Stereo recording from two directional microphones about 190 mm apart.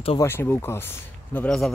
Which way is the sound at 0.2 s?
10° left (ahead or behind).